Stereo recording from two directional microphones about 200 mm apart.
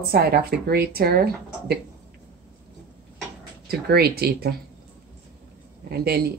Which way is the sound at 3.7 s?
50° right (ahead or behind).